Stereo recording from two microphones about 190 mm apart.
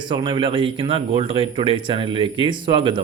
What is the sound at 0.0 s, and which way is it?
Speech, 25° right (ahead or behind).